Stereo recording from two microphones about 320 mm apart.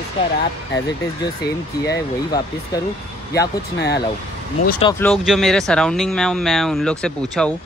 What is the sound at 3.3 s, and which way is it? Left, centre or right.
Speech, left.